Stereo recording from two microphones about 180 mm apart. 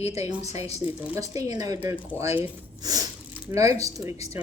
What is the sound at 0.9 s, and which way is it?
Speech, 10° right (ahead or behind).